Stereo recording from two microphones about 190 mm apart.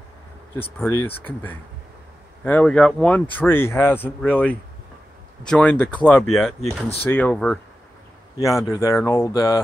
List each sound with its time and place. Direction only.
0.8 s speech: 10° left (ahead or behind)
8.4 s speech: 15° left (ahead or behind)